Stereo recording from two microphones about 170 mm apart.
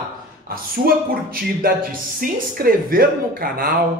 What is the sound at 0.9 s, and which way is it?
Speech, 60° right (ahead or behind).